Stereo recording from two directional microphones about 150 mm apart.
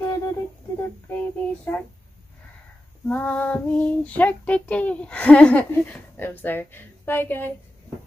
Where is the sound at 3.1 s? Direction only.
10° left (ahead or behind).